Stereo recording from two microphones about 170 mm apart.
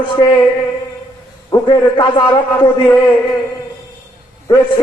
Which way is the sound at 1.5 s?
25° left (ahead or behind).